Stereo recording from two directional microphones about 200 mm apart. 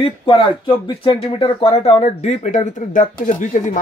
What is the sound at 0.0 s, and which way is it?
Speech, 25° left (ahead or behind).